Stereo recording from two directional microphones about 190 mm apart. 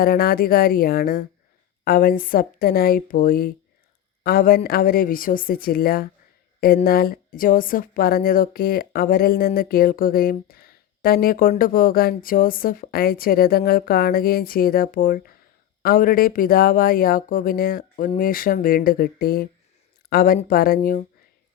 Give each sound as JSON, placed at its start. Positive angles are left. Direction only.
{"t": 0.0, "sound": "speech", "side_deg": 50}